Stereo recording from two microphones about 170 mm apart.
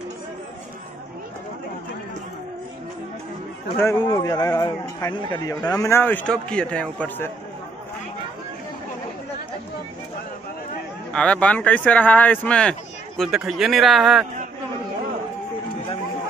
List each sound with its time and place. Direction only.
3.8 s a man's voice: 20° left (ahead or behind)
11.1 s a man's voice: 5° left (ahead or behind)